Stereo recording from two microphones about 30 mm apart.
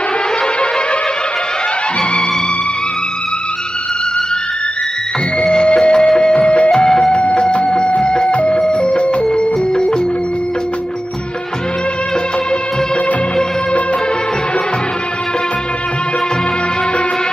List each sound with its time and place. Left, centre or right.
5.4 s music: left
7.1 s a sound: left
8.0 s music: left
8.3 s a sound: left
8.8 s music: left
9.3 s music: left